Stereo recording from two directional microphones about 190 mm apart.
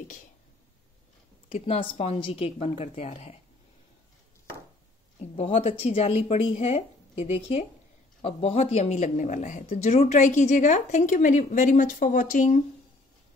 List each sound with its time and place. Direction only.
1.8 s speech: 30° left (ahead or behind)
5.3 s speech: 30° left (ahead or behind)